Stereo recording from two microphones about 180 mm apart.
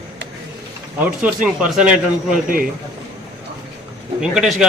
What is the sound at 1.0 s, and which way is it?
Speech, 5° right (ahead or behind).